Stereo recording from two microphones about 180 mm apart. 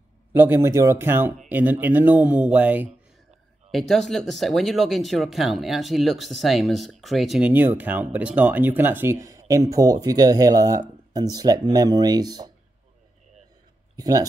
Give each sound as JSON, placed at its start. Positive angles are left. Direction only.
{"t": 0.3, "sound": "speech", "side_deg": -10}
{"t": 3.7, "sound": "speech", "side_deg": 0}
{"t": 13.9, "sound": "speech", "side_deg": -20}